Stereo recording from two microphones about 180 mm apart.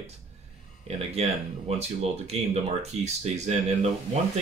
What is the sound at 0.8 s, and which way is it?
Speech, 35° right (ahead or behind).